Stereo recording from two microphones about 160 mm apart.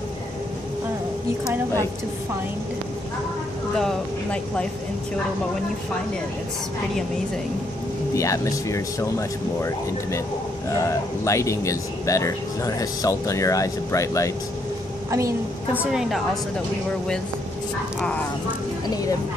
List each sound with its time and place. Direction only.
3.8 s speech: 5° left (ahead or behind)
8.1 s speech: 20° left (ahead or behind)
15.0 s a woman's voice: 20° right (ahead or behind)
15.9 s a woman's voice: 5° right (ahead or behind)